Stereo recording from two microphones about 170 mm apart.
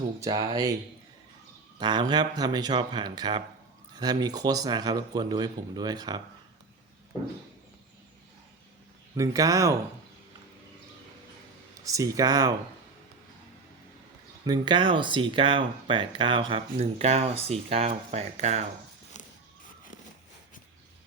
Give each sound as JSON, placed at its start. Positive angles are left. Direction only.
{"t": 0.2, "sound": "speech", "side_deg": -20}
{"t": 1.8, "sound": "speech", "side_deg": -25}
{"t": 9.1, "sound": "speech", "side_deg": -20}
{"t": 11.9, "sound": "speech", "side_deg": -20}
{"t": 14.4, "sound": "speech", "side_deg": -25}
{"t": 19.1, "sound": "a sound", "side_deg": 45}